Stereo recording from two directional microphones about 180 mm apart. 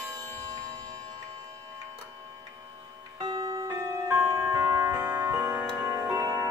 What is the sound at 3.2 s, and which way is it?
Clock, 25° right (ahead or behind).